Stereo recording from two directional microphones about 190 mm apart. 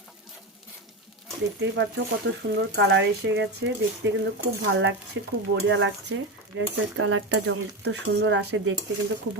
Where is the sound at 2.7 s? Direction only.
70° right (ahead or behind).